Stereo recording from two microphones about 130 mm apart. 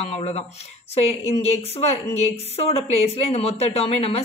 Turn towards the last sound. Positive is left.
turn(degrees=50)  # may be behind; listen again after turning